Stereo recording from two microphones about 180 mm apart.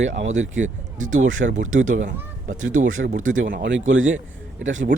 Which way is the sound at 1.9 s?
45° right (ahead or behind).